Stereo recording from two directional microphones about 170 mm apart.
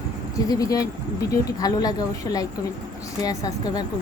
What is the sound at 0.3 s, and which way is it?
Speech, 20° left (ahead or behind).